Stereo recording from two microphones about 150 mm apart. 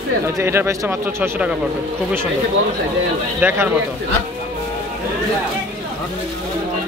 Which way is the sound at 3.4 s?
15° right (ahead or behind).